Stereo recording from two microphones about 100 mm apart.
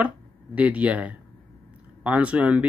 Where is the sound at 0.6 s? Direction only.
15° right (ahead or behind).